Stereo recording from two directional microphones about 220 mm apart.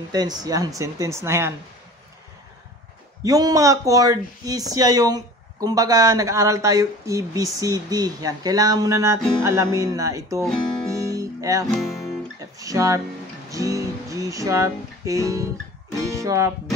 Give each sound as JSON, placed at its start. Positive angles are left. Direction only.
{"t": 0.1, "sound": "speech", "side_deg": -15}
{"t": 3.3, "sound": "speech", "side_deg": -15}
{"t": 11.1, "sound": "music", "side_deg": -15}
{"t": 11.6, "sound": "speech", "side_deg": 0}
{"t": 12.4, "sound": "speech", "side_deg": -15}
{"t": 13.5, "sound": "music", "side_deg": -15}
{"t": 16.0, "sound": "speech", "side_deg": -15}